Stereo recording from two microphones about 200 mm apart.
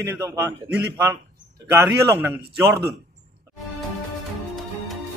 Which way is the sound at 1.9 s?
10° right (ahead or behind).